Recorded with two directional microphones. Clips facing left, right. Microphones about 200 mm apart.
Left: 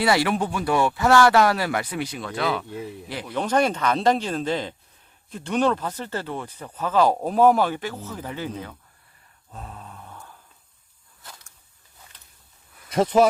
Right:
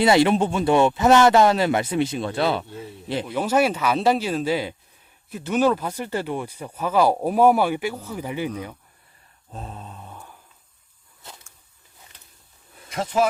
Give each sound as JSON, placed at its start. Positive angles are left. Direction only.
{"t": 0.0, "sound": "speech", "side_deg": -25}
{"t": 3.3, "sound": "speech", "side_deg": -5}
{"t": 9.5, "sound": "mantra", "side_deg": -25}